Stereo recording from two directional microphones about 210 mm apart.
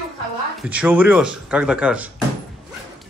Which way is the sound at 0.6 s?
10° right (ahead or behind).